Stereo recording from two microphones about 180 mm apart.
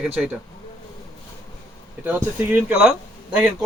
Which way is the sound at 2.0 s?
10° right (ahead or behind).